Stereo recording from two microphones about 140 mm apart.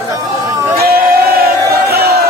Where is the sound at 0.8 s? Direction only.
90° right.